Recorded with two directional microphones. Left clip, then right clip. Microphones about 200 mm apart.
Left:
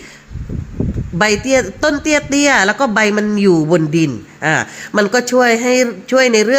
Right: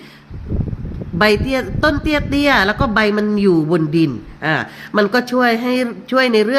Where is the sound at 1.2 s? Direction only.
25° left (ahead or behind).